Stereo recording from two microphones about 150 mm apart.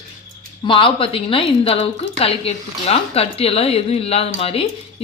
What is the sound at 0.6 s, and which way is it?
Speech, 35° left (ahead or behind).